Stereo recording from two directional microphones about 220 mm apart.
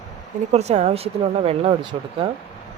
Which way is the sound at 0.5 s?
30° right (ahead or behind).